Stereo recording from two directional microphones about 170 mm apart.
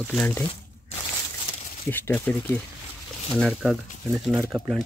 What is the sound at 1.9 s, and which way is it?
Speech, 10° left (ahead or behind).